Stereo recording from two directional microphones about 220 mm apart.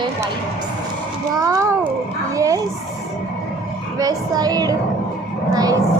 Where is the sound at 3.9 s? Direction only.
15° right (ahead or behind).